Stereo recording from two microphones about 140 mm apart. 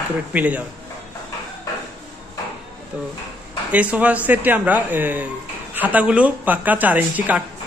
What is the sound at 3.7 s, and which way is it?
Speech, 10° right (ahead or behind).